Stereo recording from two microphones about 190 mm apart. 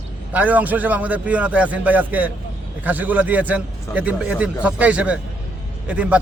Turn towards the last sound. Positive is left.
turn(degrees=-5)  # may be behind; listen again after turning